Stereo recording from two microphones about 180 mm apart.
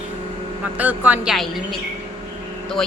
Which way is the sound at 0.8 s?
10° right (ahead or behind).